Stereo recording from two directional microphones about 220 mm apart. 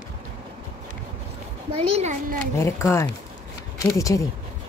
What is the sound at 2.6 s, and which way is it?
Speech, 10° left (ahead or behind).